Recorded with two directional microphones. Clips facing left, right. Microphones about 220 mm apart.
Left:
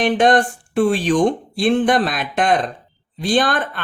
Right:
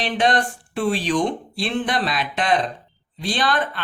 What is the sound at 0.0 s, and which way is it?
Speech, 50° left (ahead or behind).